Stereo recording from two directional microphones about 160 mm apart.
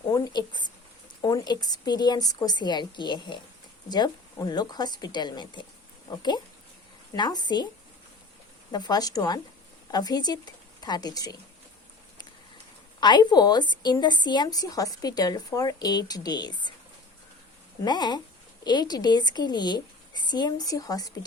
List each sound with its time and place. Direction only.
0.1 s a woman's voice: 25° left (ahead or behind)
8.7 s a woman's voice: 25° left (ahead or behind)
13.0 s a woman's voice: 25° left (ahead or behind)
17.8 s a woman's voice: 25° left (ahead or behind)